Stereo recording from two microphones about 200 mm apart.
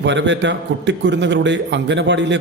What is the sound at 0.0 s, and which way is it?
A man's voice, 65° right (ahead or behind).